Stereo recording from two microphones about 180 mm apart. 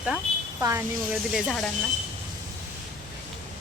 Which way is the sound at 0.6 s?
15° right (ahead or behind).